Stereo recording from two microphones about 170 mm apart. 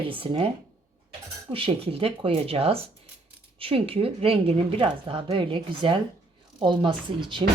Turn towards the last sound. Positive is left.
turn(degrees=-30)  # may be behind; listen again after turning